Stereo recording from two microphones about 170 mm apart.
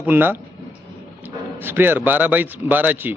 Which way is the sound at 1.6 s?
10° right (ahead or behind).